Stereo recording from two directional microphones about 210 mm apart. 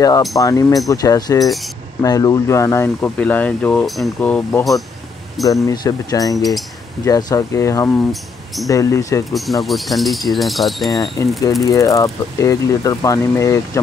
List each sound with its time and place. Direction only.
0.4 s speech: 15° left (ahead or behind)
1.4 s a sound: centre (ahead or behind)
2.0 s speech: 15° left (ahead or behind)
5.5 s speech: 15° left (ahead or behind)
9.3 s a sound: centre (ahead or behind)
11.2 s speech: 15° left (ahead or behind)